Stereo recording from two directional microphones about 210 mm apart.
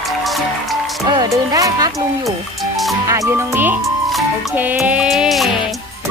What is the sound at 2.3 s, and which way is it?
Music, centre (ahead or behind).